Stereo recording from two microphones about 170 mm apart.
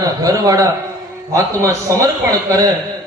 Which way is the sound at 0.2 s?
20° right (ahead or behind).